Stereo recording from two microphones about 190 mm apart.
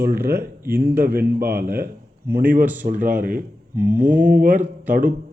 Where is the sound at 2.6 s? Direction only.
10° right (ahead or behind).